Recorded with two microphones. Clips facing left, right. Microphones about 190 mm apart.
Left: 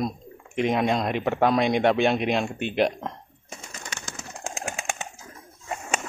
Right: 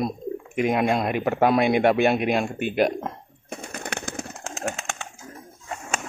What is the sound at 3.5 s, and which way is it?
Bird, 60° right (ahead or behind).